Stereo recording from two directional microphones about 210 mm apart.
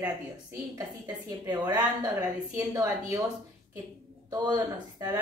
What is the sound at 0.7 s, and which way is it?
A woman's voice, 15° right (ahead or behind).